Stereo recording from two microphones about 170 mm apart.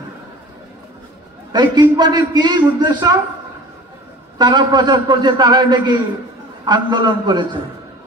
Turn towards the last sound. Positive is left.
turn(degrees=-25)  # may be behind; listen again after turning